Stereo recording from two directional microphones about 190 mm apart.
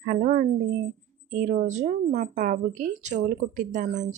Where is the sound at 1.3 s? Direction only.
40° right (ahead or behind).